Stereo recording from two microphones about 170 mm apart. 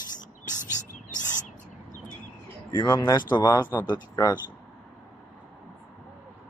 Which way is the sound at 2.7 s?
25° left (ahead or behind).